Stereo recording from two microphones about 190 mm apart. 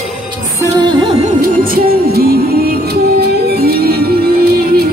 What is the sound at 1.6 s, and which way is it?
Music, 50° right (ahead or behind).